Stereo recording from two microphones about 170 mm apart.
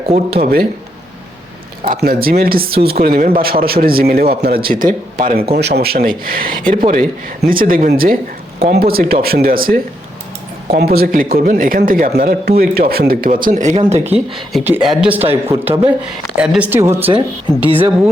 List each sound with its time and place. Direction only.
1.8 s speech: 65° right (ahead or behind)
5.5 s speech: 80° right; by 14.3 s 40° right (ahead or behind)
14.3 s speech: centre (ahead or behind)
17.7 s speech: 30° right (ahead or behind)